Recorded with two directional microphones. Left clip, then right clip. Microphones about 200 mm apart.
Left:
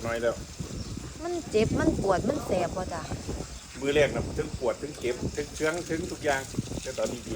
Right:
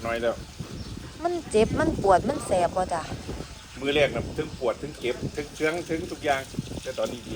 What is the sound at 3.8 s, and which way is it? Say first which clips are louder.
Speech: right 1 dB; 30° right (ahead or behind).